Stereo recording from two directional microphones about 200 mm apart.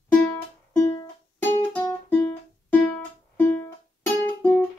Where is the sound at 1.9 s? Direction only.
10° left (ahead or behind).